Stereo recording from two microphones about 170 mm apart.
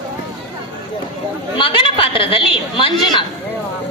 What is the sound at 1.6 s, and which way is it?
A woman's voice, 30° left (ahead or behind).